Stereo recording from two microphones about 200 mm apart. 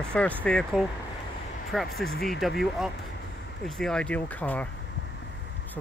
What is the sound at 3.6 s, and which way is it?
Speech, centre (ahead or behind).